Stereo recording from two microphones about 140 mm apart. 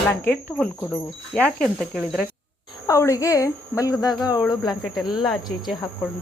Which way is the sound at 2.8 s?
20° left (ahead or behind).